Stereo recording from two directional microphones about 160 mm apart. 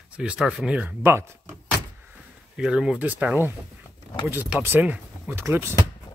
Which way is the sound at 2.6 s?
5° right (ahead or behind).